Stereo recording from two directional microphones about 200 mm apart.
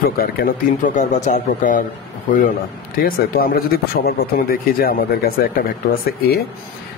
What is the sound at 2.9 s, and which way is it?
Speech, 45° left (ahead or behind).